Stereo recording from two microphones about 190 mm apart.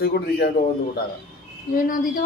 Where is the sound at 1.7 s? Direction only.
45° left (ahead or behind).